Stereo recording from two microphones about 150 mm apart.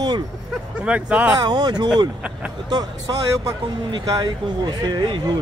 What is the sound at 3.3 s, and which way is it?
Speech, 25° right (ahead or behind).